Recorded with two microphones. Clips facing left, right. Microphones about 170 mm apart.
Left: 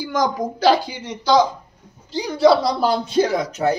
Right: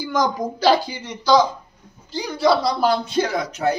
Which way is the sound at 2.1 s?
30° left (ahead or behind).